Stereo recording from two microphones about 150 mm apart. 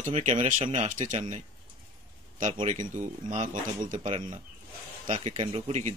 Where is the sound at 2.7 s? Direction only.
55° right (ahead or behind).